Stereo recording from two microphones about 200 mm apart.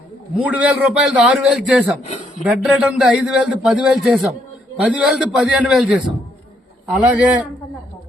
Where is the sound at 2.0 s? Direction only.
35° left (ahead or behind).